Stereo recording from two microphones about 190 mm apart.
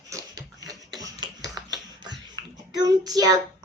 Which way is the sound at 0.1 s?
20° right (ahead or behind).